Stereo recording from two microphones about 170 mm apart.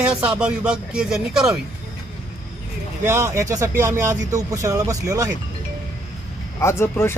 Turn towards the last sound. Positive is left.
turn(degrees=15)  # may be behind; listen again after turning